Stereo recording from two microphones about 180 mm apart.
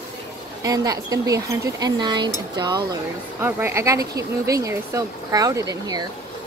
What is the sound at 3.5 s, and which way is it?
Speech, 10° right (ahead or behind).